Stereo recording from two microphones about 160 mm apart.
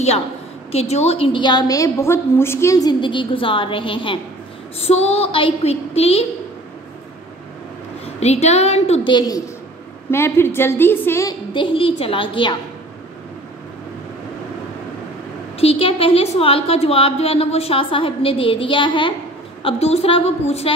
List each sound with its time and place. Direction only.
0.7 s a woman's voice: 40° left (ahead or behind)
8.2 s a woman's voice: 45° left (ahead or behind)
9.0 s a woman's voice: 30° left (ahead or behind)
10.1 s a woman's voice: 15° left (ahead or behind)
11.5 s a woman's voice: 35° left (ahead or behind)
15.6 s a woman's voice: 35° left (ahead or behind)